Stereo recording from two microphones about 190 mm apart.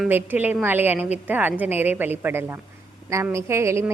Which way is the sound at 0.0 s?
10° right (ahead or behind).